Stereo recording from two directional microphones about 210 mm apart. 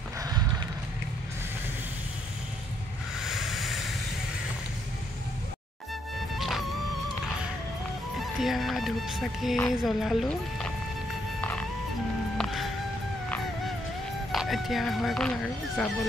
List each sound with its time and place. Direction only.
0.2 s clip-clop: 20° right (ahead or behind)
3.2 s a sound: centre (ahead or behind)
6.1 s music: centre (ahead or behind)
8.2 s speech: centre (ahead or behind)
12.4 s music: centre (ahead or behind)
14.3 s speech: centre (ahead or behind)